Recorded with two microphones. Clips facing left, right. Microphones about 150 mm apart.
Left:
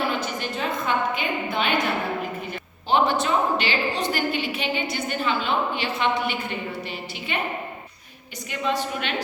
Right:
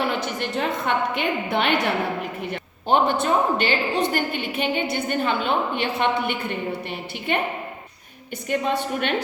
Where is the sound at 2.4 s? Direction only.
70° right (ahead or behind).